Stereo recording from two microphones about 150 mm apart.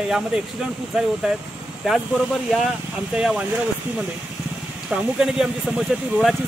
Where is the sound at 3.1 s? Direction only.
5° right (ahead or behind).